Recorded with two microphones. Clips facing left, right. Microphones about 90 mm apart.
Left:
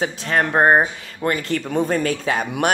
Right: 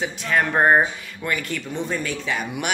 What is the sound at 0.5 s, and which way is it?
Speech, 25° left (ahead or behind).